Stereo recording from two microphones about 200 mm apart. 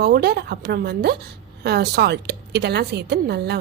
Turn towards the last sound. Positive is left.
turn(degrees=-55)  # may be behind; listen again after turning